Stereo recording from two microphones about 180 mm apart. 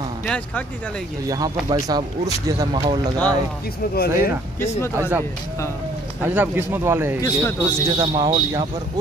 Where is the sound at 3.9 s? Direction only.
60° left (ahead or behind).